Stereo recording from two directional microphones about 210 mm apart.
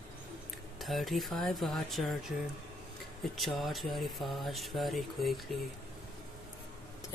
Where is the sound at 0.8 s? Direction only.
Centre (ahead or behind).